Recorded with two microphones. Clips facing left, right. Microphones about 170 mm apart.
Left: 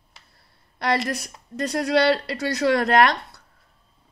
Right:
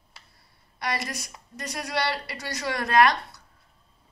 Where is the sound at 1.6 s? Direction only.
60° left (ahead or behind).